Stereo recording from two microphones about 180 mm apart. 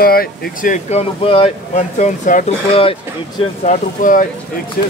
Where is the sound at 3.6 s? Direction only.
45° left (ahead or behind).